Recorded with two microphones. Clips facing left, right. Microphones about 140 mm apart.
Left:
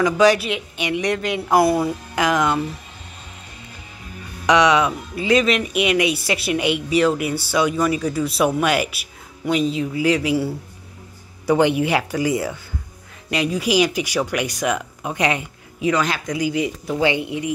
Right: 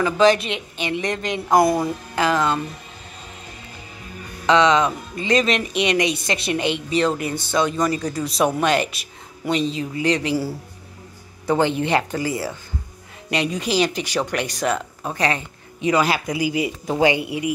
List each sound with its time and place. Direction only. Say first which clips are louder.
0.0 s a woman's voice: left 1 dB; 10° left (ahead or behind)
4.5 s a woman's voice: even; 10° left (ahead or behind)
13.3 s a woman's voice: left 2 dB; 5° left (ahead or behind)
15.8 s speech: right 1 dB; 5° right (ahead or behind)
16.8 s speech: right 3 dB; 40° right (ahead or behind)
17.1 s speech: even; 10° right (ahead or behind)